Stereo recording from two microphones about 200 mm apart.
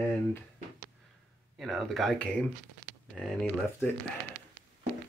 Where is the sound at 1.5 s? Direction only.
Centre (ahead or behind).